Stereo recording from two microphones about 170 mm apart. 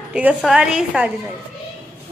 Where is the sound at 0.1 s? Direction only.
5° right (ahead or behind).